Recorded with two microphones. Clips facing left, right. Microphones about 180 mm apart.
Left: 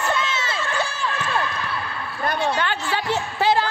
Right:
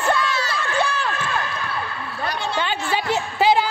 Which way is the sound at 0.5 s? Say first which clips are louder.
Right 3 dB; 60° right (ahead or behind).